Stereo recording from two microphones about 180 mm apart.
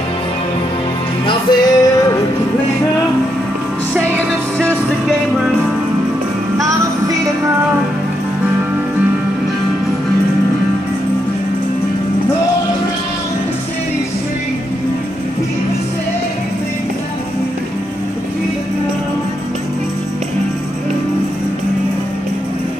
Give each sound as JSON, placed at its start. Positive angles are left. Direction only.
{"t": 1.2, "sound": "music", "side_deg": 20}
{"t": 4.6, "sound": "music", "side_deg": 0}